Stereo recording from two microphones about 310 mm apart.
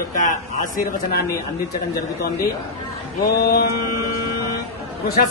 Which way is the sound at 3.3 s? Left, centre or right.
Left.